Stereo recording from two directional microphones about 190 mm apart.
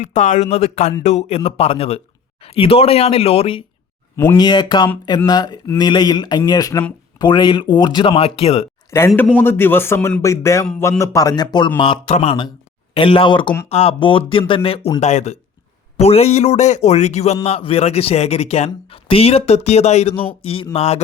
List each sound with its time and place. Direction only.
0.0 s a man's voice: 40° left (ahead or behind)
4.2 s speech: 15° left (ahead or behind)
8.9 s a man's voice: 15° left (ahead or behind); by 21.0 s 35° left (ahead or behind)